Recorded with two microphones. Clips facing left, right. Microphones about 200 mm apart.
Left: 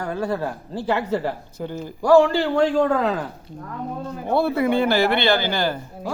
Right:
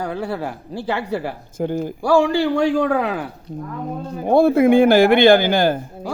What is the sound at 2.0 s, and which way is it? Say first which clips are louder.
Speech: left 2 dB; 10° right (ahead or behind).